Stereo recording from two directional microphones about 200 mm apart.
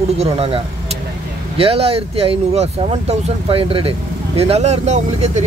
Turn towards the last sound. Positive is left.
turn(degrees=-35)  # may be behind; listen again after turning